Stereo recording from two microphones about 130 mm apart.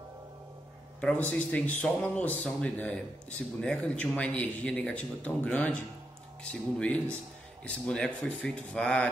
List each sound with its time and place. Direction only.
1.0 s speech: 10° left (ahead or behind)